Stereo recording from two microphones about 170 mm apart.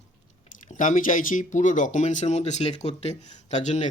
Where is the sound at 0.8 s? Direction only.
50° left (ahead or behind).